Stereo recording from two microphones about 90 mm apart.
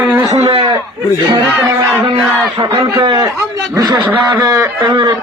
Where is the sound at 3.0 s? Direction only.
55° right (ahead or behind).